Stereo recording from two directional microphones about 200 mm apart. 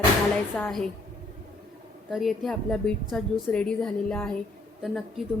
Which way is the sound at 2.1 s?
Centre (ahead or behind).